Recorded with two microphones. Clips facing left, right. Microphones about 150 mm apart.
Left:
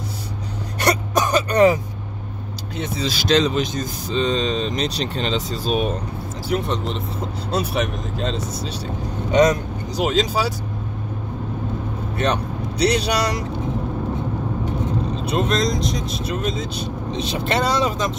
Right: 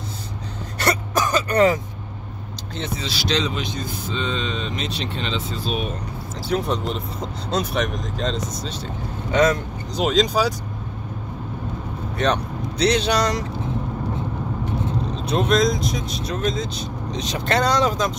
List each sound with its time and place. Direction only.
0.7 s throat clearing: 15° left (ahead or behind)
3.0 s speech: 45° left (ahead or behind)
6.5 s speech: centre (ahead or behind)
9.3 s speech: 15° left (ahead or behind)
12.2 s speech: 10° left (ahead or behind)
15.3 s speech: centre (ahead or behind)